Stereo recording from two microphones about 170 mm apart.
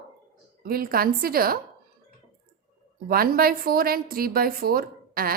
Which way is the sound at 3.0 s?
60° right (ahead or behind).